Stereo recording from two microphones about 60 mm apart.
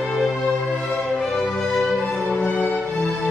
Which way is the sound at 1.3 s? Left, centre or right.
Centre.